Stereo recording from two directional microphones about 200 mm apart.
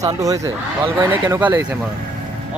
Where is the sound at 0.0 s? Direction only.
15° right (ahead or behind).